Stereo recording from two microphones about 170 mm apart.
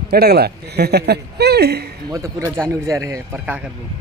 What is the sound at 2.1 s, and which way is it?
Speech, 15° right (ahead or behind).